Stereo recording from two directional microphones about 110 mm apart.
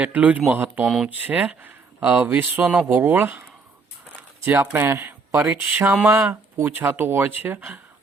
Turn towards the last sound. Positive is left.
turn(degrees=-15)  # may be behind; listen again after turning